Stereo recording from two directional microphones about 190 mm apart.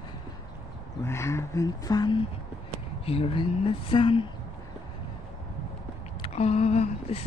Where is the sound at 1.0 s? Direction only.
15° left (ahead or behind).